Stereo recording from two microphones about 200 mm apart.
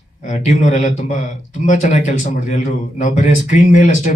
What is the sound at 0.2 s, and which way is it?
Speech, 40° left (ahead or behind).